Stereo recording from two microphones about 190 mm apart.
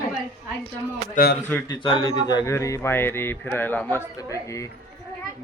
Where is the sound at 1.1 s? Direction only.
55° left (ahead or behind).